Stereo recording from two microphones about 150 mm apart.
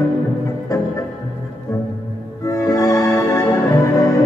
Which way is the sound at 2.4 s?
20° left (ahead or behind).